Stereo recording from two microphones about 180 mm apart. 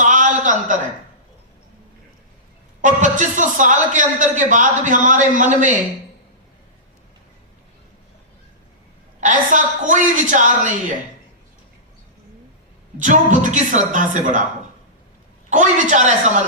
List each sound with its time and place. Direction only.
0.0 s a sound: 45° right (ahead or behind)
2.8 s a man's voice: 45° right (ahead or behind)
9.2 s a man's voice: 45° right (ahead or behind)
13.0 s a man's voice: 45° right (ahead or behind)
15.4 s a man's voice: 40° right (ahead or behind)